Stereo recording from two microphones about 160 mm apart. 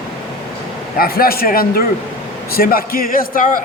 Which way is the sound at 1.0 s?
65° left (ahead or behind).